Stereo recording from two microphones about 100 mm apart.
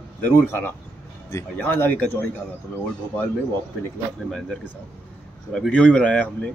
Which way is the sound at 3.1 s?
15° left (ahead or behind).